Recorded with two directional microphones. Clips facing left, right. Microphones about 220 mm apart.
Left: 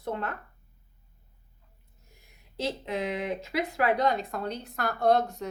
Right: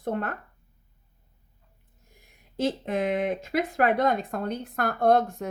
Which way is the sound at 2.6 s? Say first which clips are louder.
Right 5 dB; 50° right (ahead or behind).